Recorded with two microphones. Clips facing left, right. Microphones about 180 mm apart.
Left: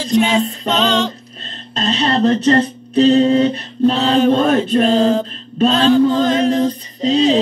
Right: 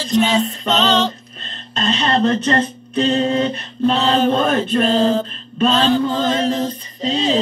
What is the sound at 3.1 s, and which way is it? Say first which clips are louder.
Mantra: left 5 dB; 25° left (ahead or behind).